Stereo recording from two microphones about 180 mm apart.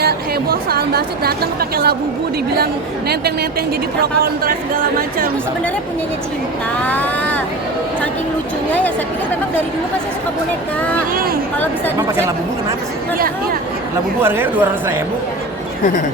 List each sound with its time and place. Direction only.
0.0 s a woman's voice: 60° right (ahead or behind)
4.0 s a woman's voice: 55° right (ahead or behind)
6.8 s speech: 10° left (ahead or behind)
11.1 s a woman's voice: 55° right (ahead or behind)
13.1 s a woman's voice: 55° right (ahead or behind)
14.2 s speech: 10° right (ahead or behind)